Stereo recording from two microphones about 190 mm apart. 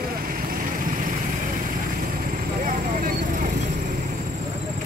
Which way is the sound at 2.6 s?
45° right (ahead or behind).